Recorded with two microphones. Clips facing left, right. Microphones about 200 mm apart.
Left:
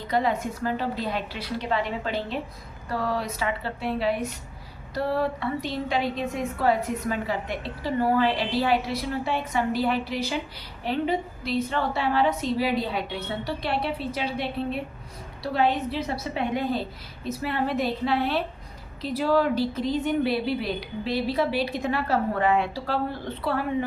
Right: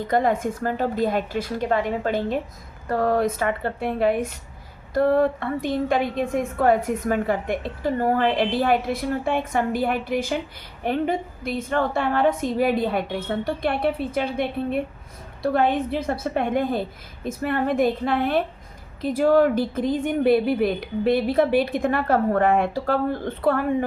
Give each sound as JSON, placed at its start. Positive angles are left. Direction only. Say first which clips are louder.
{"t": 0.1, "sound": "a woman's voice", "louder": "right 3 dB", "side_deg": -50}